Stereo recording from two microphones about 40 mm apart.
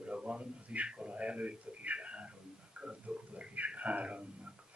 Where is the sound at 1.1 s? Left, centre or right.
Right.